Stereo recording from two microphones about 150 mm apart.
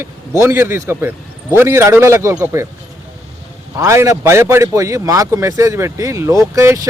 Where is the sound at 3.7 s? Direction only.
20° right (ahead or behind).